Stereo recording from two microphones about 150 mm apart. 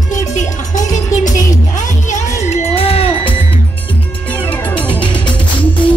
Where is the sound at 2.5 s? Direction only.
40° left (ahead or behind).